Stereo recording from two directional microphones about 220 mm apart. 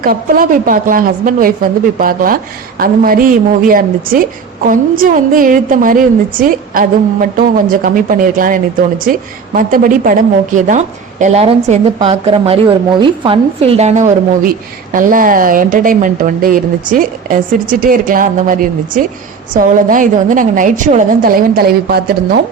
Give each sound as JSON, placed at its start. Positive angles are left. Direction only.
{"t": 0.0, "sound": "speech", "side_deg": -40}